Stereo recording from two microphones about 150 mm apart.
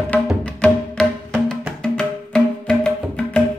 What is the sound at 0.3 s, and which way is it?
Music, 5° left (ahead or behind).